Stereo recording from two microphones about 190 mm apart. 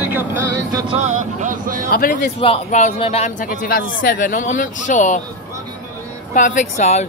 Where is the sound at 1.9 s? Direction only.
50° left (ahead or behind).